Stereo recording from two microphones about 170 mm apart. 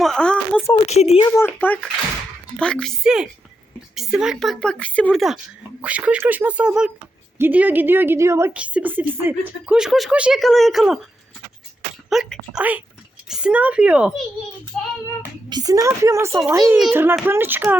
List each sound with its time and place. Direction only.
0.0 s a woman's voice: 5° left (ahead or behind)
0.9 s speech: 40° left (ahead or behind)
1.2 s a woman's voice: 15° left (ahead or behind); by 11.0 s centre (ahead or behind)
12.0 s a woman's voice: centre (ahead or behind)
14.7 s child singing: 5° left (ahead or behind)
15.4 s a woman's voice: 20° right (ahead or behind)